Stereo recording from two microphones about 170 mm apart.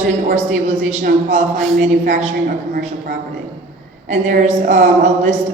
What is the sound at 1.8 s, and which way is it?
Speech, 45° right (ahead or behind).